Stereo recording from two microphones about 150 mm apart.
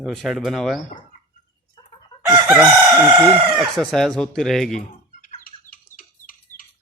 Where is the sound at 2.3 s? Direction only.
10° right (ahead or behind).